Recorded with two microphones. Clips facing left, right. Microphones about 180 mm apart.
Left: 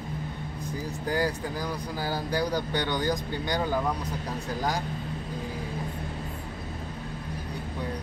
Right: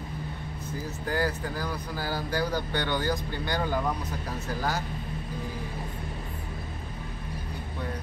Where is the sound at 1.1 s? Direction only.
15° left (ahead or behind).